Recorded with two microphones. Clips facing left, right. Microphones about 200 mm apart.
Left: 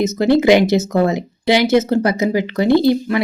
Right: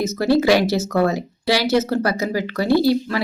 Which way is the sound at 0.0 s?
20° left (ahead or behind).